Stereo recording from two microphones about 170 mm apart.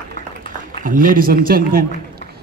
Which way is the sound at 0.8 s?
55° right (ahead or behind).